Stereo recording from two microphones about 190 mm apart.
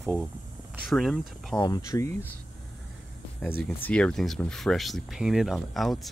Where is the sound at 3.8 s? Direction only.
5° left (ahead or behind).